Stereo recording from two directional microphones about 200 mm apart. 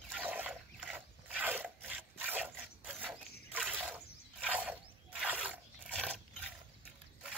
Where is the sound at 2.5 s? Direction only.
5° right (ahead or behind).